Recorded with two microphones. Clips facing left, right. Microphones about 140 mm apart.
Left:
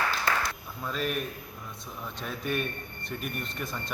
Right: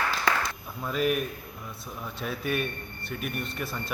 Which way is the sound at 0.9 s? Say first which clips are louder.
Right 5 dB; 5° right (ahead or behind).